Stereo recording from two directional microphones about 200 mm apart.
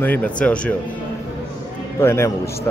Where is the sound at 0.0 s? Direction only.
10° left (ahead or behind).